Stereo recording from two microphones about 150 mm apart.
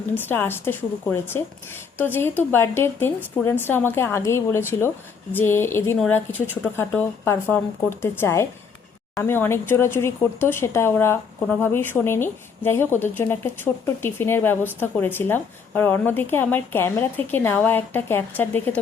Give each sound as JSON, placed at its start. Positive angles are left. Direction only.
{"t": 0.1, "sound": "a woman's voice", "side_deg": 15}